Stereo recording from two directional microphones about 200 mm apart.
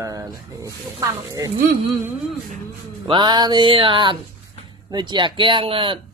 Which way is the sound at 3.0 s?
20° right (ahead or behind).